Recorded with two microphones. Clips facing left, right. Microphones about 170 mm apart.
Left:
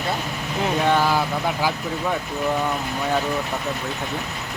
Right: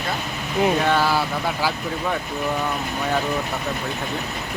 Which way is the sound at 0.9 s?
15° left (ahead or behind).